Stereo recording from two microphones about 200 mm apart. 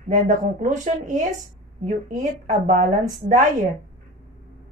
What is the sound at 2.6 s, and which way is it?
Speech, 40° right (ahead or behind).